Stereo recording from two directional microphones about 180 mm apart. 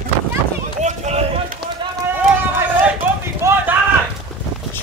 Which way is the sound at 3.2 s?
15° right (ahead or behind).